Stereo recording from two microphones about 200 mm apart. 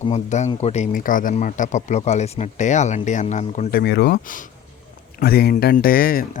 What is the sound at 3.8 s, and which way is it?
Speech, 55° left (ahead or behind).